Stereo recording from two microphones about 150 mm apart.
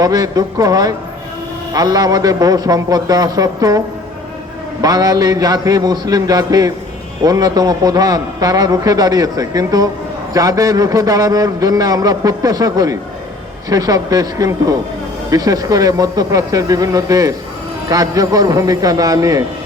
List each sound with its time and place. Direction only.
0.0 s a man's voice: 25° right (ahead or behind)